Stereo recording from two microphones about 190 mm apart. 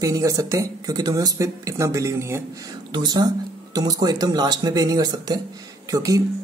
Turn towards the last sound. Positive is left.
turn(degrees=-20)  # may be behind; listen again after turning